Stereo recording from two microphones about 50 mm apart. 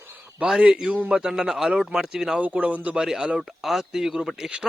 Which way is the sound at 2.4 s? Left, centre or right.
Right.